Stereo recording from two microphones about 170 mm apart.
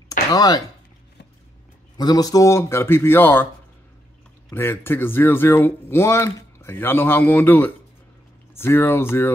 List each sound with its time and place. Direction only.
0.3 s speech: 25° left (ahead or behind)
2.0 s speech: 20° left (ahead or behind)
4.5 s speech: 15° left (ahead or behind)